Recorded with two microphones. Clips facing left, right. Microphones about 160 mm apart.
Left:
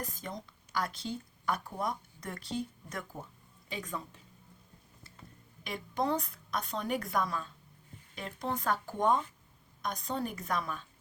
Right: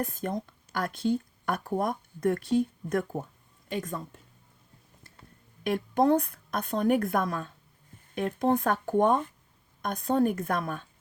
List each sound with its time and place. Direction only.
0.0 s speech: 55° right (ahead or behind)
5.6 s a woman's voice: 55° right (ahead or behind)